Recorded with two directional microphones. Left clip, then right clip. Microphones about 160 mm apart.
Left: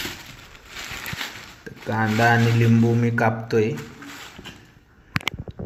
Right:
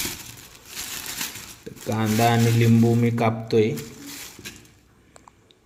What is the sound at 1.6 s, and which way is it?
Speech, 15° right (ahead or behind).